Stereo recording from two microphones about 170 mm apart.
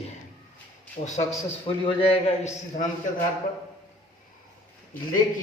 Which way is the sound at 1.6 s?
35° left (ahead or behind).